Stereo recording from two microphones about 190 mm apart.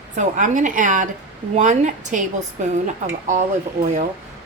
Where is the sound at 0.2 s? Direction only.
40° right (ahead or behind).